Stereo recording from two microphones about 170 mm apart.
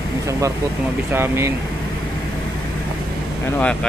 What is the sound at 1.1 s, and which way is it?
Speech, 15° right (ahead or behind).